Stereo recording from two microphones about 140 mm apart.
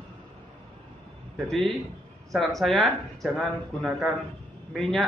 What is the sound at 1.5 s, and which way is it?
Speech, centre (ahead or behind).